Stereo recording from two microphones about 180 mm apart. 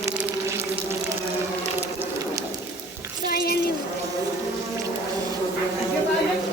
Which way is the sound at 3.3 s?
60° left (ahead or behind).